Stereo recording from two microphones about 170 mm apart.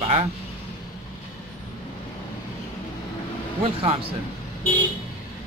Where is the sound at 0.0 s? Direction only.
35° right (ahead or behind).